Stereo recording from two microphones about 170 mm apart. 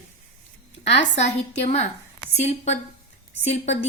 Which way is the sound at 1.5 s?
40° left (ahead or behind).